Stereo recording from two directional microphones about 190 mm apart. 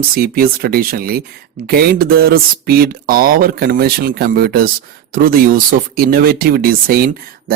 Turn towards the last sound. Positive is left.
turn(degrees=-50)  # may be behind; listen again after turning